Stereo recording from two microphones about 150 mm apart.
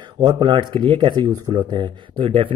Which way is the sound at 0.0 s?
30° right (ahead or behind).